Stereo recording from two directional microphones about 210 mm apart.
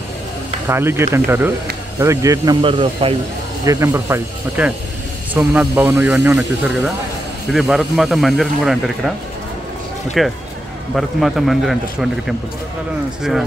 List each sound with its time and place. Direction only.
0.7 s speech: 10° right (ahead or behind)
3.6 s speech: 15° right (ahead or behind)
10.2 s speech: centre (ahead or behind)